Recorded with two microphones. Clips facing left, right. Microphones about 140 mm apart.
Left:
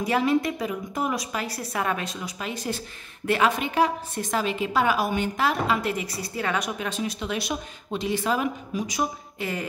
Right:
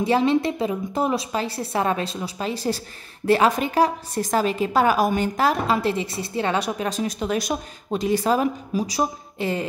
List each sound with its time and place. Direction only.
0.0 s a woman's voice: 25° right (ahead or behind)